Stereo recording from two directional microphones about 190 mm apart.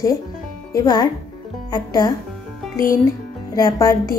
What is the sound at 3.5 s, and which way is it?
Speech, 20° left (ahead or behind).